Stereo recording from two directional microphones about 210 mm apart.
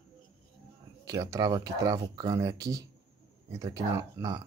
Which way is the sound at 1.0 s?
15° right (ahead or behind).